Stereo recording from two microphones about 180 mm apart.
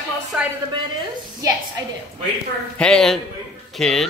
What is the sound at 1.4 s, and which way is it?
Speech, 20° right (ahead or behind).